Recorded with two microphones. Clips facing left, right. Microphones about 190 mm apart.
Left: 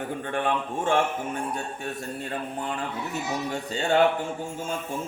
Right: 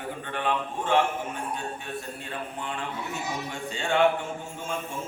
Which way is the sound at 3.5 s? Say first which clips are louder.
Left 4 dB; 40° left (ahead or behind).